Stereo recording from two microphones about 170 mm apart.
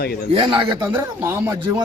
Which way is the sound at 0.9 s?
15° right (ahead or behind).